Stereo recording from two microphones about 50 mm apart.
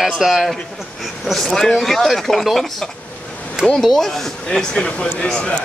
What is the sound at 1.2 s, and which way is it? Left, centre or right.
Speech, centre.